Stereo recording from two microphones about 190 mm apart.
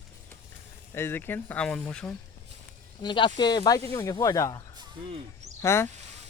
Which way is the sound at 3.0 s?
25° left (ahead or behind).